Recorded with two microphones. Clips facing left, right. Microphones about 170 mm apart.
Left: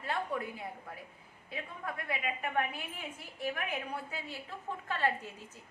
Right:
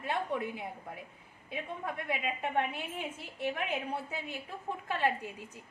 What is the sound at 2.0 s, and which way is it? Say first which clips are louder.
A woman's voice: right 1 dB; 25° right (ahead or behind).